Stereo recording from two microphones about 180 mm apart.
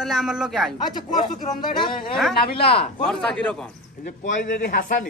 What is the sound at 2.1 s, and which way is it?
Speech, centre (ahead or behind).